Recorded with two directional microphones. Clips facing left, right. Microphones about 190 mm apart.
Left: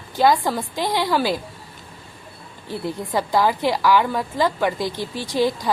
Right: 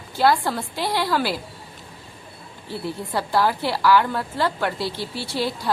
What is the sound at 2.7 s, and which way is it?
A woman's voice, 15° left (ahead or behind).